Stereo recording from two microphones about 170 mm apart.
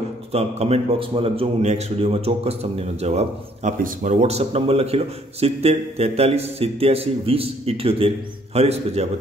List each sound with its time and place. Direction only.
0.3 s a man's voice: 35° right (ahead or behind)